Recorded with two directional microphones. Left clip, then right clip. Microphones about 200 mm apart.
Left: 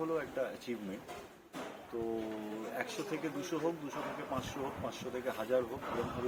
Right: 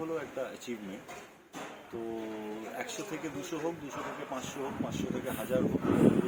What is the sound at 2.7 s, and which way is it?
Speech, centre (ahead or behind).